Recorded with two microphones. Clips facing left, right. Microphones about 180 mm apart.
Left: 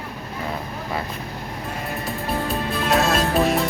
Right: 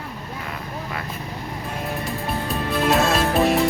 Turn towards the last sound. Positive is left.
turn(degrees=0)  # may be behind; listen again after turning